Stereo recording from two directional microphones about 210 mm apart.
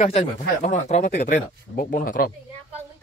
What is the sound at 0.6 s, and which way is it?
Speech, 35° left (ahead or behind).